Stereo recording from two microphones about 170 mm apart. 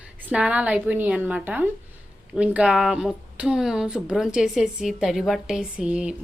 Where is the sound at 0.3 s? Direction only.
5° right (ahead or behind).